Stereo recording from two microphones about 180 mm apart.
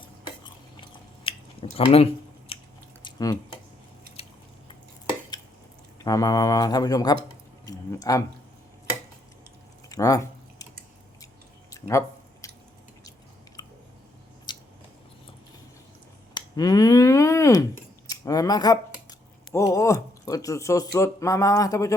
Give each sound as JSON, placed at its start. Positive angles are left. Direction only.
{"t": 0.4, "sound": "biting", "side_deg": 30}
{"t": 1.7, "sound": "speech", "side_deg": 35}
{"t": 2.5, "sound": "biting", "side_deg": 30}
{"t": 3.0, "sound": "a sound", "side_deg": 20}
{"t": 4.2, "sound": "squish", "side_deg": 35}
{"t": 6.0, "sound": "speech", "side_deg": 20}
{"t": 9.9, "sound": "typing", "side_deg": 20}
{"t": 11.7, "sound": "a sound", "side_deg": 15}
{"t": 13.6, "sound": "chewing", "side_deg": 20}
{"t": 14.5, "sound": "scissors", "side_deg": 25}
{"t": 16.3, "sound": "speech", "side_deg": 20}